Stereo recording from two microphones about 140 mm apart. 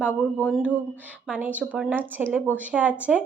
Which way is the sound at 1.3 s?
10° right (ahead or behind).